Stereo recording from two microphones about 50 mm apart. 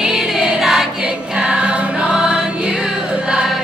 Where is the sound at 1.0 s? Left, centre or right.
Centre.